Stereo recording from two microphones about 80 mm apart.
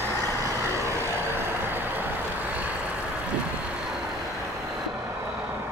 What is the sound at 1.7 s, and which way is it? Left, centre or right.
Vehicle, right.